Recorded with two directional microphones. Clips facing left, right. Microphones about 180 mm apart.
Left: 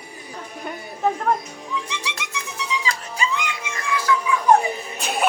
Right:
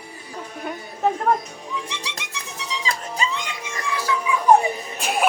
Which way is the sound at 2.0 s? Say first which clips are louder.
Left 3 dB; 35° right (ahead or behind).